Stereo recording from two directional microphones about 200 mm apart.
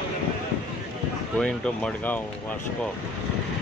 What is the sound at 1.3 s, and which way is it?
Speech, 5° left (ahead or behind).